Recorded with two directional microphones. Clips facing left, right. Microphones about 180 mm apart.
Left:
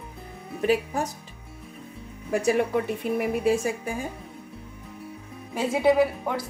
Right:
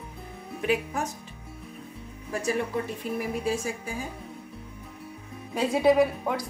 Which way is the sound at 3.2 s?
60° left (ahead or behind).